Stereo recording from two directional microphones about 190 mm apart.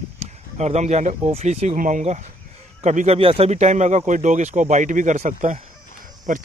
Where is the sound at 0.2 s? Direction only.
35° right (ahead or behind).